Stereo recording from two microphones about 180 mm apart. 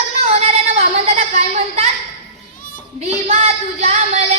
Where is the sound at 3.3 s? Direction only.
35° right (ahead or behind).